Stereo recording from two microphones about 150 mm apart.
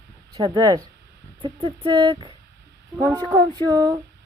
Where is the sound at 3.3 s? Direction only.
30° right (ahead or behind).